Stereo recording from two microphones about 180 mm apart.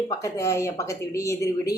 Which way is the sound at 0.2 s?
15° left (ahead or behind).